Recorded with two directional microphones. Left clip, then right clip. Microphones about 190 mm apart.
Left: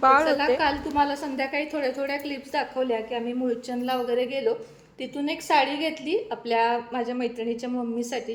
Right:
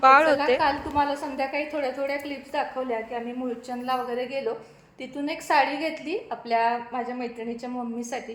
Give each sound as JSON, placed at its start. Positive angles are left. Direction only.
{"t": 0.0, "sound": "a woman's voice", "side_deg": -20}
{"t": 0.6, "sound": "a woman's voice", "side_deg": 5}